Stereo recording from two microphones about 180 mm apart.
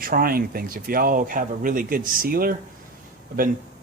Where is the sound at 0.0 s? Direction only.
55° right (ahead or behind).